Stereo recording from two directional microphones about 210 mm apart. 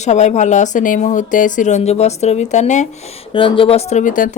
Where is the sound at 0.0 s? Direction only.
35° left (ahead or behind).